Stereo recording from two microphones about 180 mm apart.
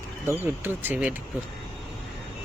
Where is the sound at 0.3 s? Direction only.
10° right (ahead or behind).